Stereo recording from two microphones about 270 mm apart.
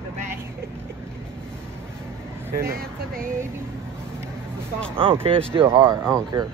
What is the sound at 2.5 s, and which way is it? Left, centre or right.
Speech, right.